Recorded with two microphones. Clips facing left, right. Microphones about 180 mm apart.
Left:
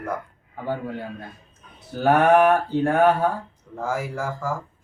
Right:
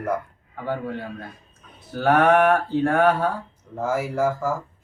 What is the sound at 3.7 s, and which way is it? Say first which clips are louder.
Speech: right 4 dB; 10° right (ahead or behind).